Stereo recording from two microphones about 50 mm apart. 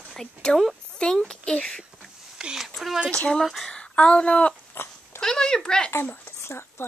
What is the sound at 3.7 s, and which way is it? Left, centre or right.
Speech, centre.